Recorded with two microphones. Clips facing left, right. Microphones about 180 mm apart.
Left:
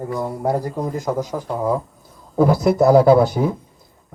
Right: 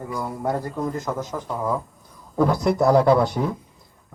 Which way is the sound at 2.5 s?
5° left (ahead or behind).